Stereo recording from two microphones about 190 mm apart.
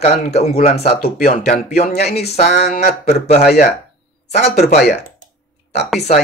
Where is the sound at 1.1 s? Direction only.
50° left (ahead or behind).